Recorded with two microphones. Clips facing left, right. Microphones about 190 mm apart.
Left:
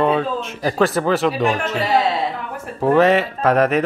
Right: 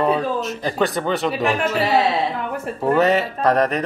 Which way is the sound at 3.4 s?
35° right (ahead or behind).